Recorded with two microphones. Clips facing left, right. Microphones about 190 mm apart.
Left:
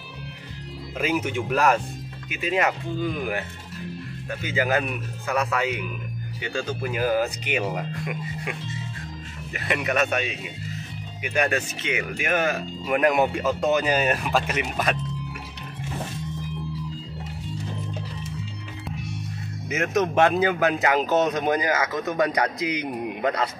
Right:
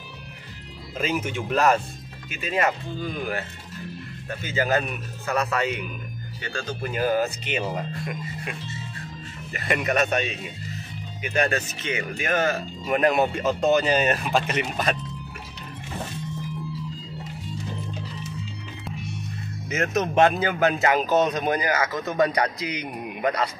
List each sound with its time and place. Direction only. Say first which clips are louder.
0.9 s speech: left 2 dB; 15° left (ahead or behind)
4.4 s speech: even; 15° left (ahead or behind)
9.5 s speech: right 1 dB; 5° left (ahead or behind)
19.9 s speech: even; 25° right (ahead or behind)
21.4 s a man's voice: left 1 dB; 20° left (ahead or behind)